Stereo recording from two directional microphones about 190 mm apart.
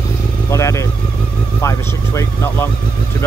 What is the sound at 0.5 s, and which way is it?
Speech, 15° left (ahead or behind).